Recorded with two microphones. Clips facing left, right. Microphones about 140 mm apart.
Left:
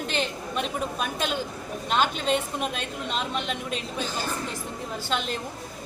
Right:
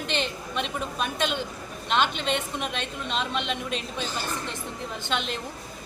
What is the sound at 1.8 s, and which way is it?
A woman's voice, 40° left (ahead or behind).